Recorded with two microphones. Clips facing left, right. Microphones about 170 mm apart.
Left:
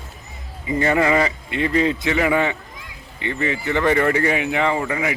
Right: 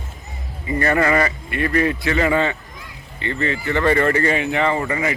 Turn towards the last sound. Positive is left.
turn(degrees=0)  # may be behind; listen again after turning